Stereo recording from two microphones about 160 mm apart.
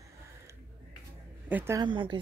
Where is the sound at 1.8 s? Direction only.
30° right (ahead or behind).